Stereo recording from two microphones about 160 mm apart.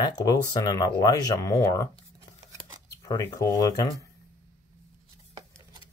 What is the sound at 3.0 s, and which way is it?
Speech, 20° left (ahead or behind).